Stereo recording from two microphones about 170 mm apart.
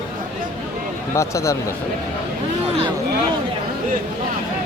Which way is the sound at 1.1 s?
15° left (ahead or behind).